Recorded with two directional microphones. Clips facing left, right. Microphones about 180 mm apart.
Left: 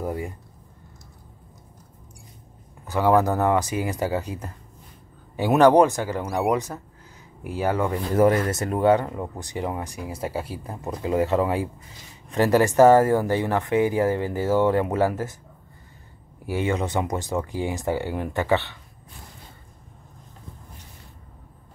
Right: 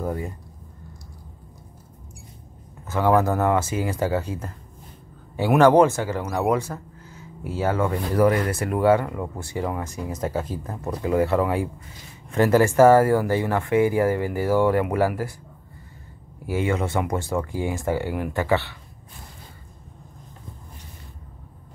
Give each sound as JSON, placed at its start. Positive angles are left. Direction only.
{"t": 0.0, "sound": "speech", "side_deg": 15}
{"t": 2.9, "sound": "speech", "side_deg": 15}
{"t": 16.4, "sound": "speech", "side_deg": 20}